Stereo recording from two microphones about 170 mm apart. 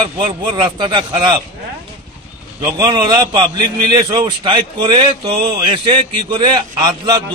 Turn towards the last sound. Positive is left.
turn(degrees=-25)  # may be behind; listen again after turning